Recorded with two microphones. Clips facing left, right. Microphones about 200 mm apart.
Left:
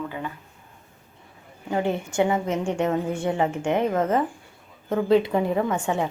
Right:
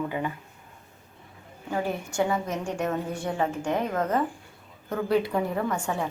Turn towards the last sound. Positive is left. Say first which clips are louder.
# left 4 dB
turn(degrees=20)  # may be behind; listen again after turning